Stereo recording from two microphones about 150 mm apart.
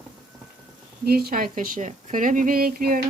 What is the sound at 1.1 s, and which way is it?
Speech, 90° right.